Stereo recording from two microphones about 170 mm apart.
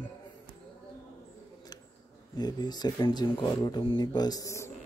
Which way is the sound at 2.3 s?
25° left (ahead or behind).